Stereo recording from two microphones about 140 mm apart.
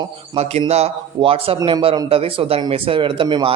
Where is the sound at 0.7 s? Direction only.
45° right (ahead or behind).